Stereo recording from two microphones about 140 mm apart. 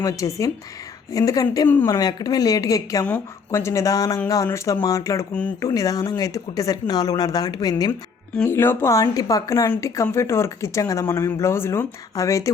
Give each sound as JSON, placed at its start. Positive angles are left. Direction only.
{"t": 0.0, "sound": "speech", "side_deg": 25}
{"t": 1.6, "sound": "a woman's voice", "side_deg": 15}
{"t": 2.0, "sound": "speech", "side_deg": 30}
{"t": 8.4, "sound": "speech", "side_deg": 15}